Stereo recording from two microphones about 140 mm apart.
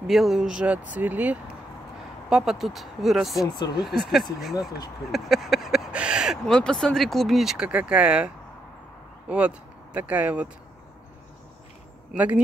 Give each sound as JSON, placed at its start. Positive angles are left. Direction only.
{"t": 0.0, "sound": "speech", "side_deg": 0}
{"t": 3.5, "sound": "speech", "side_deg": 30}
{"t": 3.8, "sound": "speech", "side_deg": 0}
{"t": 4.6, "sound": "speech", "side_deg": 25}
{"t": 5.1, "sound": "speech", "side_deg": 0}
{"t": 9.3, "sound": "speech", "side_deg": -10}